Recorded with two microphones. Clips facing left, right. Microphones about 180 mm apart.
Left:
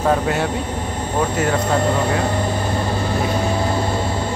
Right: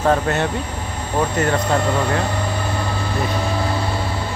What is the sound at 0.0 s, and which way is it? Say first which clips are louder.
Speech: even; 10° left (ahead or behind).